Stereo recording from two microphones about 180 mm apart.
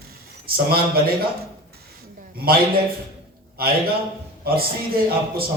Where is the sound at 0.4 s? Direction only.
55° right (ahead or behind).